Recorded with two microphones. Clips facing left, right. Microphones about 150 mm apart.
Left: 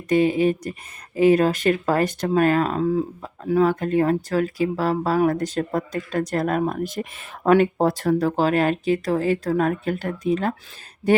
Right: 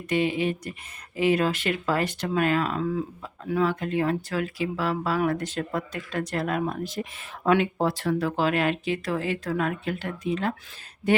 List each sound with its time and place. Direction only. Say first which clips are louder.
0.1 s speech: left 7 dB; 45° left (ahead or behind)